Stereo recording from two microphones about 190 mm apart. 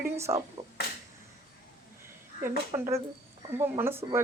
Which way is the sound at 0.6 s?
30° right (ahead or behind).